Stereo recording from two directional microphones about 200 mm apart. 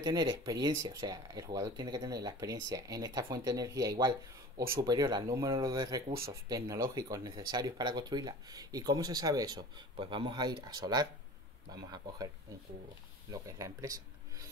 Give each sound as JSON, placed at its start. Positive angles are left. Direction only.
{"t": 0.0, "sound": "speech", "side_deg": -20}
{"t": 13.3, "sound": "speech", "side_deg": -15}